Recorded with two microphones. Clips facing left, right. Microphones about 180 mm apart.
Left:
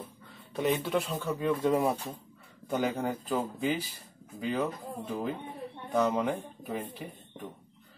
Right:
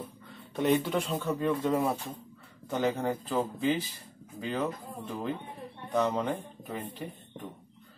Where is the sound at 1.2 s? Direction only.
10° left (ahead or behind).